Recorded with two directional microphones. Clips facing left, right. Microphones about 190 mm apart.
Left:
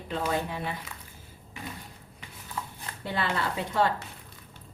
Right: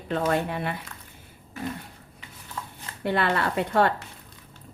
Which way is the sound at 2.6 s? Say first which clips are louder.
Left 1 dB; 5° left (ahead or behind).